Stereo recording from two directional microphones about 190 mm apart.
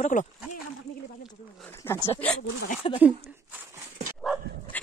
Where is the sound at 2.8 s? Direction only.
30° left (ahead or behind).